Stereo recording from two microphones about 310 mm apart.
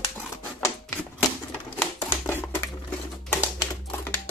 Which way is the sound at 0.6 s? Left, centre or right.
Centre.